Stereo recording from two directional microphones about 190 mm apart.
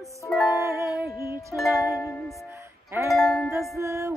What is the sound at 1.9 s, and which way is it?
Music, 15° left (ahead or behind).